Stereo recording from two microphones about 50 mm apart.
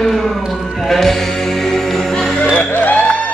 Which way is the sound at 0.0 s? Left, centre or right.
Centre.